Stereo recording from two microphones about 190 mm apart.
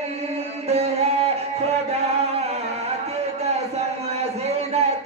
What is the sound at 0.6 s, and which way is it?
Music, 35° right (ahead or behind).